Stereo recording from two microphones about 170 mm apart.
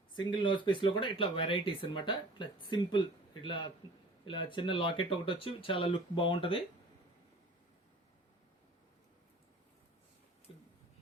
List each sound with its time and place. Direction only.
0.2 s speech: 25° left (ahead or behind)